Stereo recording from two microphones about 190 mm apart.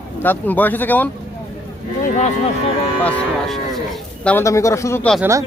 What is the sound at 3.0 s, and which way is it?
Speech, centre (ahead or behind).